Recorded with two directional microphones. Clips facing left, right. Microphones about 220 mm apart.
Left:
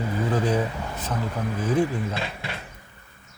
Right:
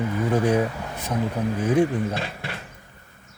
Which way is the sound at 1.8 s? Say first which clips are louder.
Right 3 dB; 45° right (ahead or behind).